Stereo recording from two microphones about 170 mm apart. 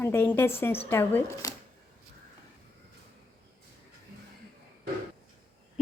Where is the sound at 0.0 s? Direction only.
15° left (ahead or behind).